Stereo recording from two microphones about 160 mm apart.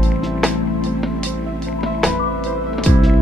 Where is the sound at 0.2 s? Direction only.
Centre (ahead or behind).